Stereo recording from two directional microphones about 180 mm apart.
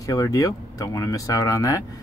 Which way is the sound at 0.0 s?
20° left (ahead or behind).